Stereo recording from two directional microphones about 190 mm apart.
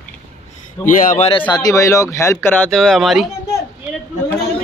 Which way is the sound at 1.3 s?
25° left (ahead or behind).